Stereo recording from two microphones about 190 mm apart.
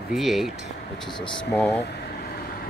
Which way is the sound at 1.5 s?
5° left (ahead or behind).